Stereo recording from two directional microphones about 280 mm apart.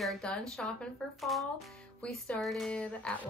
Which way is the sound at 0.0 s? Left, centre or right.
Centre.